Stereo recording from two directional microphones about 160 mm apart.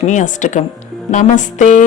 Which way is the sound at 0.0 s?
50° left (ahead or behind).